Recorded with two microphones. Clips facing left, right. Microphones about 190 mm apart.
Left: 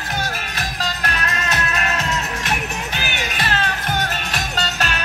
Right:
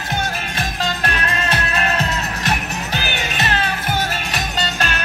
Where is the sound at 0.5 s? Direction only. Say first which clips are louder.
Right 3 dB; 25° right (ahead or behind).